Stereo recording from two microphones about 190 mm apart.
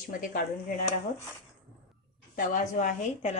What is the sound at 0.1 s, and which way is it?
Speech, 45° left (ahead or behind).